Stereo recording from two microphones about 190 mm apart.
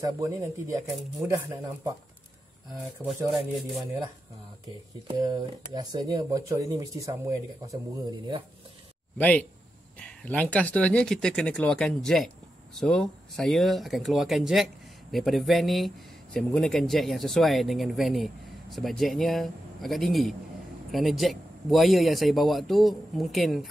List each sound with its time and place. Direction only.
0.0 s speech: 15° right (ahead or behind)
3.0 s speech: 10° right (ahead or behind)
5.0 s speech: 20° right (ahead or behind)
9.2 s speech: 5° left (ahead or behind)